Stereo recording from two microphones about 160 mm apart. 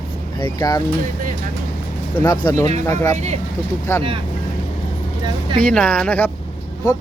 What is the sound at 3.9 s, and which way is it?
Speech, 20° left (ahead or behind).